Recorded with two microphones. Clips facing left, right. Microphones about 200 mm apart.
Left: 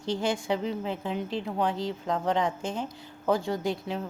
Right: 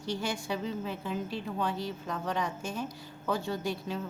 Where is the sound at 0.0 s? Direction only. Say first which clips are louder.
Left 5 dB; 20° left (ahead or behind).